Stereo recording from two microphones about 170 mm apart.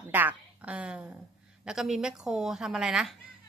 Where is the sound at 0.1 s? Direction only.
10° right (ahead or behind).